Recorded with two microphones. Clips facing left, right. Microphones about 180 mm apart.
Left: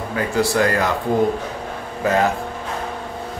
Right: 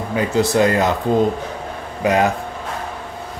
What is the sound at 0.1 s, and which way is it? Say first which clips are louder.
Speech: right 3 dB; 20° right (ahead or behind).